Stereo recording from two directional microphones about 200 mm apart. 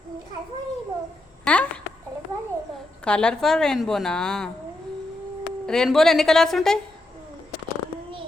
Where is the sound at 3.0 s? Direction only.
5° left (ahead or behind).